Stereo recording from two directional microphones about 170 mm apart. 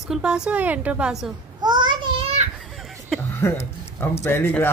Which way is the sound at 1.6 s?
25° right (ahead or behind).